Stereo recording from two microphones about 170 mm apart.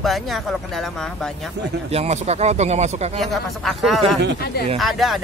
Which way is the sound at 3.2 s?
Centre (ahead or behind).